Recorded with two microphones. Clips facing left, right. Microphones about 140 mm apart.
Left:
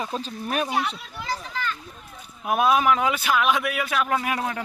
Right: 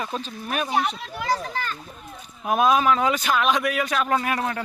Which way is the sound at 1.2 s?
55° right (ahead or behind).